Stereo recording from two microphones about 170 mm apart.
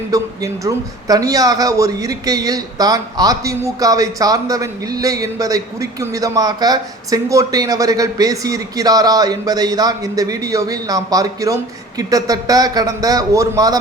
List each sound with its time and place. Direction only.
0.1 s speech: 20° right (ahead or behind)